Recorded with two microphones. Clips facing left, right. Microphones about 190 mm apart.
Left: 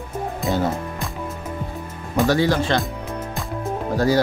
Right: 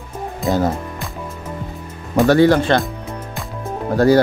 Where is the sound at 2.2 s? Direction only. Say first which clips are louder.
Right 6 dB; 55° right (ahead or behind).